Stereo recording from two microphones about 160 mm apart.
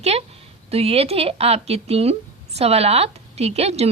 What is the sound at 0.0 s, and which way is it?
A woman's voice, 40° right (ahead or behind).